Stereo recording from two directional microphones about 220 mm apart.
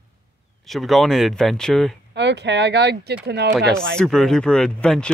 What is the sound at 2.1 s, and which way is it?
Speech, 50° right (ahead or behind).